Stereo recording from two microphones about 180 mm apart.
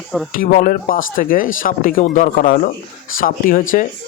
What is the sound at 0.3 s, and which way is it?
Speech, 50° left (ahead or behind).